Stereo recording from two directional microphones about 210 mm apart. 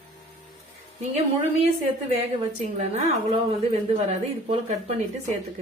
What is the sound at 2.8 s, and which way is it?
Speech, 30° right (ahead or behind).